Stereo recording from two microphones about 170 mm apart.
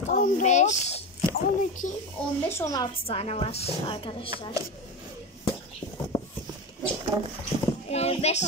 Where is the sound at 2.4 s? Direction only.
15° left (ahead or behind).